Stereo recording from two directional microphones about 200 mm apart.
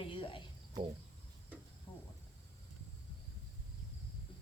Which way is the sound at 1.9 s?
25° left (ahead or behind).